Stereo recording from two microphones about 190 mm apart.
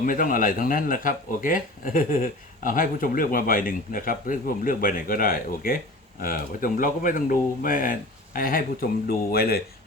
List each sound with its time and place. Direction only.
0.0 s speech: 45° left (ahead or behind)